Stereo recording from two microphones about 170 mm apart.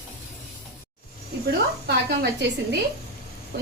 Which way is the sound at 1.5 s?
75° right (ahead or behind).